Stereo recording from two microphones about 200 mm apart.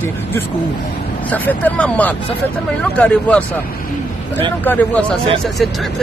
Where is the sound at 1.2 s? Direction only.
10° left (ahead or behind).